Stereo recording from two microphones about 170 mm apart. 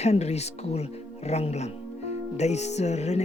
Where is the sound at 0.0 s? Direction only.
40° left (ahead or behind).